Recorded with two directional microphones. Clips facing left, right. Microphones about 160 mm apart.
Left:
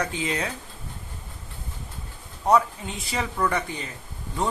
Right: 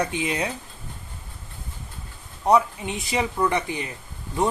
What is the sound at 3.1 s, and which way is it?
Speech, 15° right (ahead or behind).